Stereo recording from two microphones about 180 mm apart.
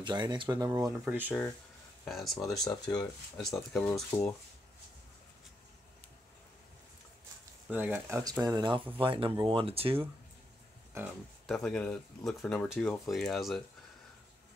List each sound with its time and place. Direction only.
0.0 s speech: 25° right (ahead or behind)
1.0 s speech: 10° right (ahead or behind)
2.6 s speech: 20° left (ahead or behind)
3.7 s speech: 5° left (ahead or behind)
4.1 s speech: 15° left (ahead or behind)
7.7 s speech: 10° right (ahead or behind); by 10.0 s 30° right (ahead or behind)
11.4 s speech: 5° left (ahead or behind)